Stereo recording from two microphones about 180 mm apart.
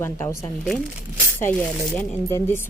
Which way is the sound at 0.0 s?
15° left (ahead or behind).